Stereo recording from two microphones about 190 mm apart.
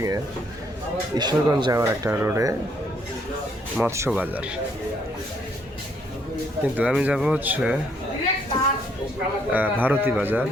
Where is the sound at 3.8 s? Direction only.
15° right (ahead or behind).